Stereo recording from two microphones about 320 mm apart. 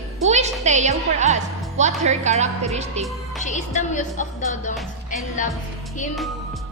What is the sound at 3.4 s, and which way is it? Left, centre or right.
Speech, left.